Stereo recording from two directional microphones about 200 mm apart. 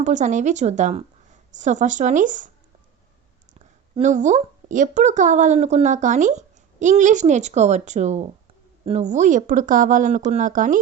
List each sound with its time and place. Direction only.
0.0 s a woman's voice: 35° right (ahead or behind)
3.9 s a woman's voice: 35° right (ahead or behind)